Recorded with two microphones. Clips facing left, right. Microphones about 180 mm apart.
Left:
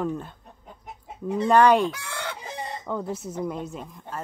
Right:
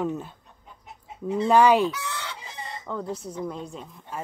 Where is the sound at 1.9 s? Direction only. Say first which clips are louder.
Even; 50° left (ahead or behind).